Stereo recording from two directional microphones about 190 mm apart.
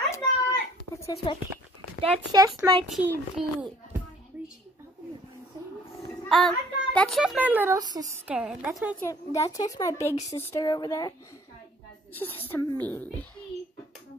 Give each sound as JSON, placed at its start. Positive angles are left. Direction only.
{"t": 0.1, "sound": "children playing", "side_deg": 15}
{"t": 2.0, "sound": "a child's voice", "side_deg": -20}
{"t": 2.9, "sound": "a woman's voice", "side_deg": -10}
{"t": 6.2, "sound": "a child's voice", "side_deg": 0}
{"t": 9.0, "sound": "a woman's voice", "side_deg": 15}
{"t": 12.4, "sound": "a woman's voice", "side_deg": 10}